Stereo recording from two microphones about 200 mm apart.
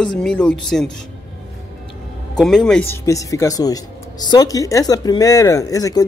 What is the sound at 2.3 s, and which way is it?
Speech, centre (ahead or behind).